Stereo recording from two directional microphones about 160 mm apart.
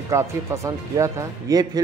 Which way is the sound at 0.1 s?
20° right (ahead or behind).